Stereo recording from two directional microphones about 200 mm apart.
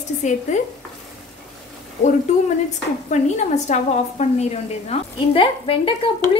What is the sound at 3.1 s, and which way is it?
A woman's voice, 35° left (ahead or behind).